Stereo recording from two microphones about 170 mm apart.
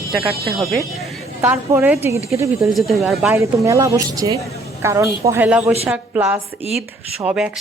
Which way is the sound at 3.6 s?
20° right (ahead or behind).